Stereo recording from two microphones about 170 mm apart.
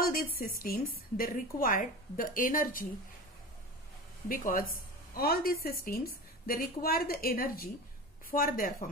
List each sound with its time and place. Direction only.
0.0 s a woman's voice: 60° left (ahead or behind)
4.3 s a woman's voice: 55° left (ahead or behind)